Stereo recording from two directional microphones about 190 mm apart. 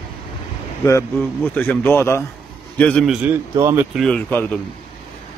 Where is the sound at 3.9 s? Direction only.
5° left (ahead or behind).